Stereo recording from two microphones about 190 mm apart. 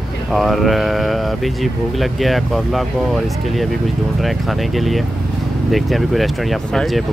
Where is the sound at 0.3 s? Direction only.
Centre (ahead or behind).